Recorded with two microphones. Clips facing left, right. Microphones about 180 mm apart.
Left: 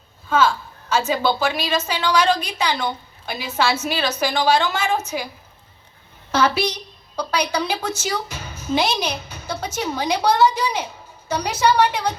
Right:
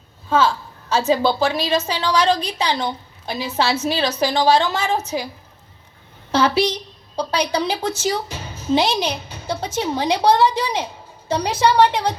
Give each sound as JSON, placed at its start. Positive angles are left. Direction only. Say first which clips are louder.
{"t": 0.3, "sound": "a woman's voice", "louder": "right 1 dB", "side_deg": -35}
{"t": 6.3, "sound": "a woman's voice", "louder": "right 2 dB", "side_deg": -30}